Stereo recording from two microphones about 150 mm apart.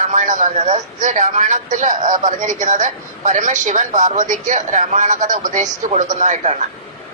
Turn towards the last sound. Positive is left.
turn(degrees=-50)  # may be behind; listen again after turning